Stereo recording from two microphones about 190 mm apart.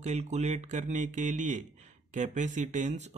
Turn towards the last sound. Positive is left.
turn(degrees=-40)  # may be behind; listen again after turning